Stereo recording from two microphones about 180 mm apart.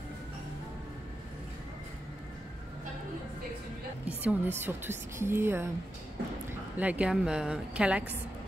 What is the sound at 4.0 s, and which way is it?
Music, 10° right (ahead or behind).